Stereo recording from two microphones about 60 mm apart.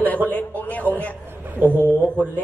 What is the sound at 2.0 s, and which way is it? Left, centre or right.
Speech, left.